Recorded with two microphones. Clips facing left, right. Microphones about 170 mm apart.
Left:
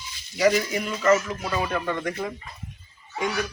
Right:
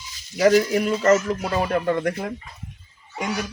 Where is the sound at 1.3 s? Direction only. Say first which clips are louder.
Right 5 dB; 45° right (ahead or behind).